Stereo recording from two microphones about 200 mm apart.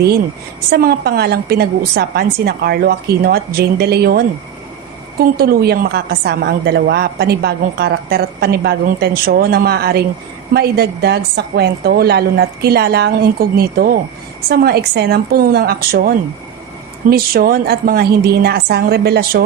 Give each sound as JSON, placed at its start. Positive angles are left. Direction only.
{"t": 0.7, "sound": "a woman's voice", "side_deg": -50}
{"t": 5.2, "sound": "a woman's voice", "side_deg": -50}